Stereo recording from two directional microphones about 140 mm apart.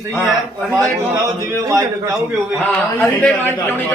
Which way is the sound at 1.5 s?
25° right (ahead or behind).